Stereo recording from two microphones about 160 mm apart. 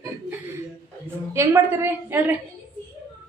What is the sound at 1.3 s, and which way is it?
A woman's voice, 15° right (ahead or behind).